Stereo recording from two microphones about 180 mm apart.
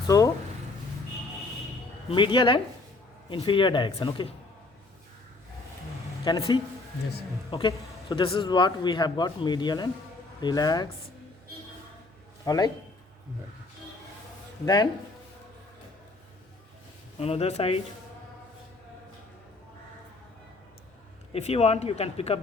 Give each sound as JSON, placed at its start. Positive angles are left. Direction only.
{"t": 0.1, "sound": "speech", "side_deg": 20}
{"t": 2.0, "sound": "speech", "side_deg": 25}
{"t": 6.2, "sound": "speech", "side_deg": 20}
{"t": 12.5, "sound": "speech", "side_deg": 20}
{"t": 14.6, "sound": "speech", "side_deg": 25}
{"t": 17.2, "sound": "speech", "side_deg": 35}
{"t": 21.3, "sound": "speech", "side_deg": 35}